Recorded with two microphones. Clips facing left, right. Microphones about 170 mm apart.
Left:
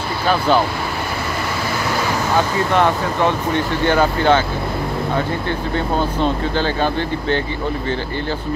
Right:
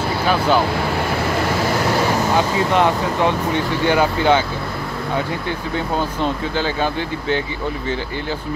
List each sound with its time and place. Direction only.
2.3 s speech: 15° right (ahead or behind)
6.6 s speech: 10° right (ahead or behind)